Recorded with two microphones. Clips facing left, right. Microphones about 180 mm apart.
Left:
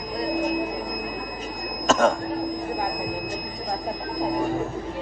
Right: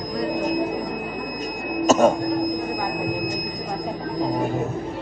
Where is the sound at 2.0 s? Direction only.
20° right (ahead or behind).